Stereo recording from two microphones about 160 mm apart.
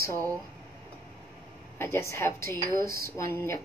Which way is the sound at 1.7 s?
15° left (ahead or behind).